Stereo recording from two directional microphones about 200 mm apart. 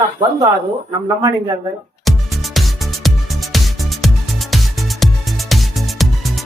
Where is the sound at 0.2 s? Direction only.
20° right (ahead or behind).